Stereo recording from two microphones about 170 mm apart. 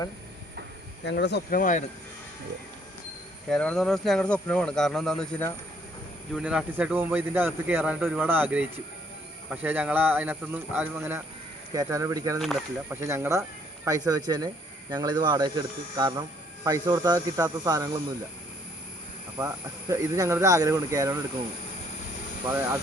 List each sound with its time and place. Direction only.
1.0 s speech: 85° left
1.5 s speech: 50° left (ahead or behind)
3.5 s speech: 5° left (ahead or behind); by 12.4 s 20° right (ahead or behind)
12.4 s speech: centre (ahead or behind)
12.9 s speech: 15° right (ahead or behind)
19.4 s speech: 15° right (ahead or behind)